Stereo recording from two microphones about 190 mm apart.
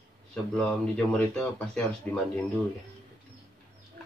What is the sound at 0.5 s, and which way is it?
Speech, 5° left (ahead or behind).